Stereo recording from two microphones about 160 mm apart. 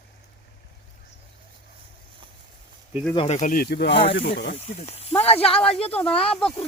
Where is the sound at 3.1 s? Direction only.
45° left (ahead or behind); by 3.9 s 90° left.